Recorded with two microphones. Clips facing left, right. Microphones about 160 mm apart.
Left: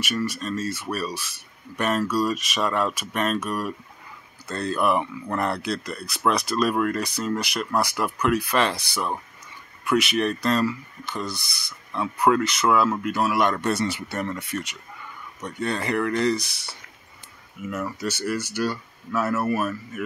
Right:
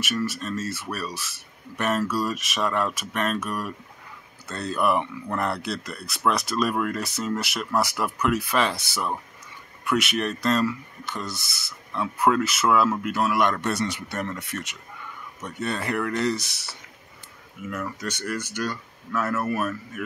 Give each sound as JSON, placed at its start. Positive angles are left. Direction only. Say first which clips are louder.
{"t": 0.0, "sound": "speech", "louder": "left 1 dB", "side_deg": 0}